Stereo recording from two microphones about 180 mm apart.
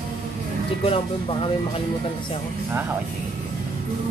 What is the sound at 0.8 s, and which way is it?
Speech, 30° left (ahead or behind).